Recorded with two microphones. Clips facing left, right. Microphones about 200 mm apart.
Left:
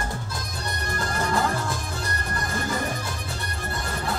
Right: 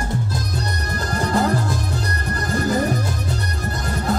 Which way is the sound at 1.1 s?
35° right (ahead or behind).